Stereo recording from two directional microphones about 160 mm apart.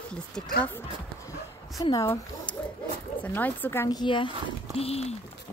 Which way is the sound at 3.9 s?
30° left (ahead or behind).